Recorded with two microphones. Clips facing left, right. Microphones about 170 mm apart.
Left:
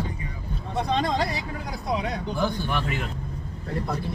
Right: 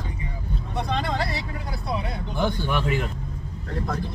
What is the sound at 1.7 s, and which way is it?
Speech, 15° left (ahead or behind).